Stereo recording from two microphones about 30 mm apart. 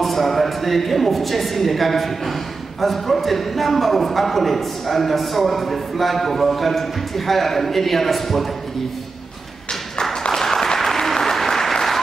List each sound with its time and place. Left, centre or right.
0.0 s a woman's voice: centre
10.3 s applause: centre